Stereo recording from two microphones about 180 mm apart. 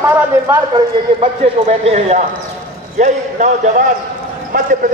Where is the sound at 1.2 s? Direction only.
35° right (ahead or behind).